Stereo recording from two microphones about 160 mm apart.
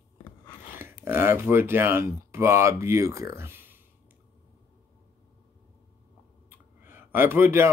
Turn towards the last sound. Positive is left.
turn(degrees=-15)  # may be behind; listen again after turning